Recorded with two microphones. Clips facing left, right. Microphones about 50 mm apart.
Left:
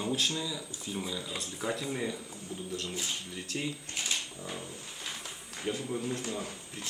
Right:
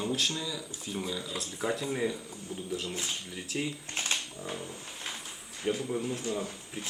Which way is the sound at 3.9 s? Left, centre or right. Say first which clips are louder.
Right 2 dB; right.